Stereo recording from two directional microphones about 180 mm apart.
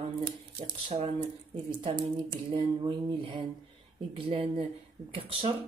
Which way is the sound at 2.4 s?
30° right (ahead or behind).